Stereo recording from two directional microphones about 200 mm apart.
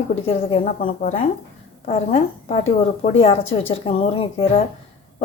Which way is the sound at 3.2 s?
30° left (ahead or behind).